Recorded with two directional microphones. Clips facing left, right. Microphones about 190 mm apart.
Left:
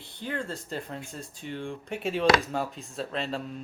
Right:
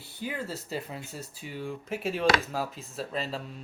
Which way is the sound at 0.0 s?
5° right (ahead or behind).